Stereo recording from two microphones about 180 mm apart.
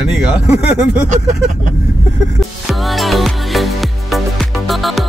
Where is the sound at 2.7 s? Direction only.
Centre (ahead or behind).